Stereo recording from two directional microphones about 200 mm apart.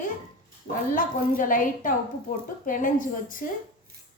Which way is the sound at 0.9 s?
40° left (ahead or behind).